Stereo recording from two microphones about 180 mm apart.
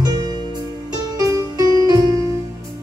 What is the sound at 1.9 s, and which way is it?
Music, 20° right (ahead or behind).